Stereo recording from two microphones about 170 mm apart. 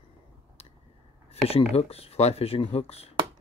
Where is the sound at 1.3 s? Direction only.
35° left (ahead or behind).